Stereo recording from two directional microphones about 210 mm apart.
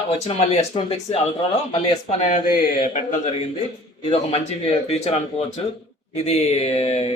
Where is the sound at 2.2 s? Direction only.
35° left (ahead or behind).